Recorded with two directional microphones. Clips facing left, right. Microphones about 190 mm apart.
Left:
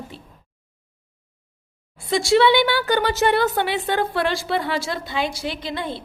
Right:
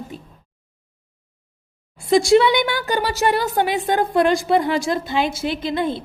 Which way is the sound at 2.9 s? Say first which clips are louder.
Right 1 dB; 10° right (ahead or behind).